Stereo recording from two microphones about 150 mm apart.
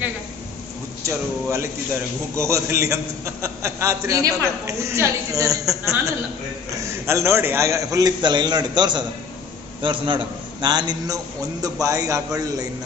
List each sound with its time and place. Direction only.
1.0 s a man's voice: 20° right (ahead or behind)